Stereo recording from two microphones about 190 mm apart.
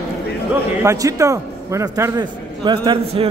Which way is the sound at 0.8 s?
15° right (ahead or behind).